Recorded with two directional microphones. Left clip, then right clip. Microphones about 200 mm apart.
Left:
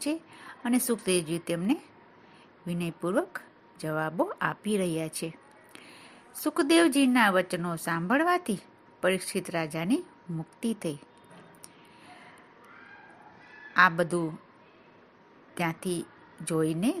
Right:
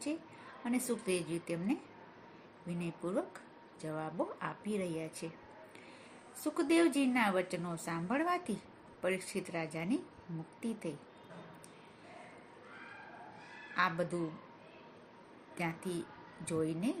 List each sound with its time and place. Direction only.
0.6 s speech: 50° left (ahead or behind)
6.4 s speech: 50° left (ahead or behind)
13.7 s speech: 50° left (ahead or behind)
15.5 s speech: 50° left (ahead or behind)